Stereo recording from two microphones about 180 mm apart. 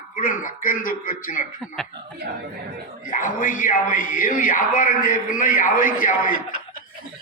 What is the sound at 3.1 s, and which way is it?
Speech, 45° left (ahead or behind).